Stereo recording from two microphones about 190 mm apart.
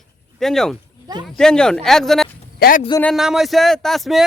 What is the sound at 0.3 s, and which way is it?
A man's voice, centre (ahead or behind).